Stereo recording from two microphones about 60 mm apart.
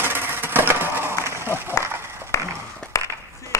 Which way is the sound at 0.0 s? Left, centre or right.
Right.